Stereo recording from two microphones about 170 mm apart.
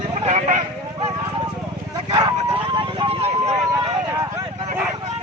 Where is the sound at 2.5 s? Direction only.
30° right (ahead or behind).